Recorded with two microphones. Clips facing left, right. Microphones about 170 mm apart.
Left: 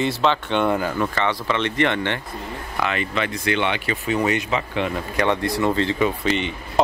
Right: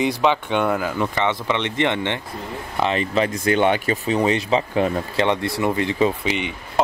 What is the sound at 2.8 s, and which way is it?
Speech, 35° right (ahead or behind).